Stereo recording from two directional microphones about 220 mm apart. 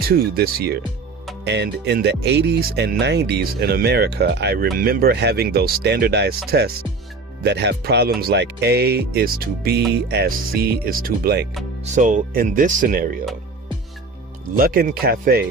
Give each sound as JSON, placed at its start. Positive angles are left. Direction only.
{"t": 0.0, "sound": "speech", "side_deg": -45}
{"t": 14.5, "sound": "speech", "side_deg": -40}